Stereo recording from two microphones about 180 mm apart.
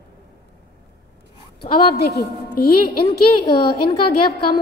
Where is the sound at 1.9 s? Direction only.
65° left (ahead or behind).